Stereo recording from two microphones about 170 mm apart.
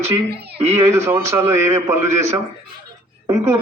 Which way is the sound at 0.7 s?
15° right (ahead or behind).